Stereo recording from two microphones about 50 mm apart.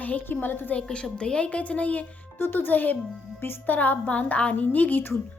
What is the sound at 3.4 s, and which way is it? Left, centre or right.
Speech, left.